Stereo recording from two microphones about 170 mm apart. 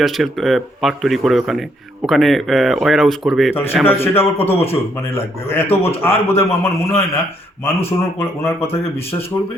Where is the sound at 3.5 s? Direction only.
15° left (ahead or behind).